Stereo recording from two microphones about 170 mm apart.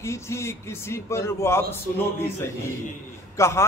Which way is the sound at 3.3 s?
15° left (ahead or behind).